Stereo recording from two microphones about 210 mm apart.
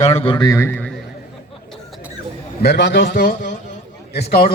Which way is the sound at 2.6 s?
55° left (ahead or behind).